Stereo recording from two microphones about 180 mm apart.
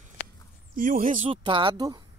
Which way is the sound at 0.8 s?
50° right (ahead or behind).